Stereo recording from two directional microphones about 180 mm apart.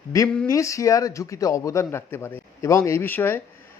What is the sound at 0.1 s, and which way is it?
A man's voice, 20° left (ahead or behind).